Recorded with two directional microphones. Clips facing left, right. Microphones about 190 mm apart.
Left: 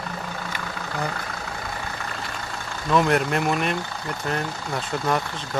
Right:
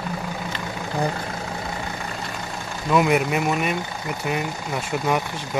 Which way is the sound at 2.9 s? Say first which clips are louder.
Right 1 dB; 10° right (ahead or behind).